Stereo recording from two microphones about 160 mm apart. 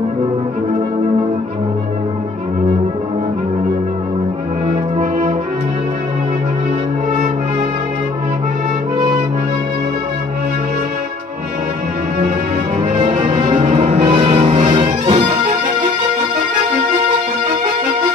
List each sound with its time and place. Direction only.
13.2 s music: 30° right (ahead or behind)
13.6 s music: 45° right (ahead or behind)